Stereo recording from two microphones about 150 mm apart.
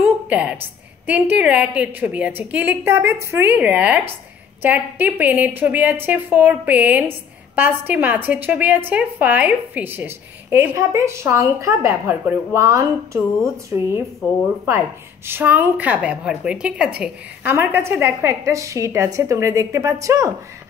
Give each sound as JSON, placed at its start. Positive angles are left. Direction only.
{"t": 0.0, "sound": "a sound", "side_deg": -10}
{"t": 1.0, "sound": "a woman's voice", "side_deg": -10}
{"t": 15.2, "sound": "a woman's voice", "side_deg": -15}